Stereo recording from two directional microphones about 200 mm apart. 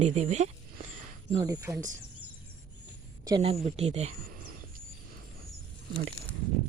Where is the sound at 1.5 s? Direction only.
15° right (ahead or behind).